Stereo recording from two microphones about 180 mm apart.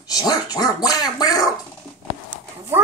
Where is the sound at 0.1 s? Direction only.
20° left (ahead or behind).